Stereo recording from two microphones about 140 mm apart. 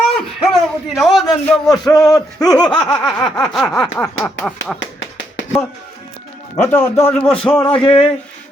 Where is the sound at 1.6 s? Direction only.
25° left (ahead or behind).